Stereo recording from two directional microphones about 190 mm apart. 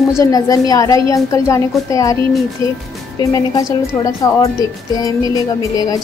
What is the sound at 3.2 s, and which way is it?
A woman's voice, 20° left (ahead or behind).